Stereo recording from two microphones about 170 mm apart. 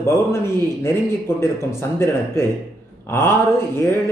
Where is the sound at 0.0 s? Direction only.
15° left (ahead or behind).